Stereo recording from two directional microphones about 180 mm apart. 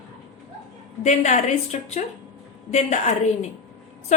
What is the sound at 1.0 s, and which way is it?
A woman's voice, 40° left (ahead or behind).